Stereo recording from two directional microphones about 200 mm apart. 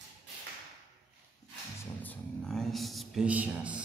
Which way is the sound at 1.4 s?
20° left (ahead or behind).